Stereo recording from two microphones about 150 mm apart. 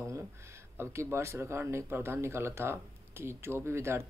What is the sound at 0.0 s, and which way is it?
Speech, 20° right (ahead or behind).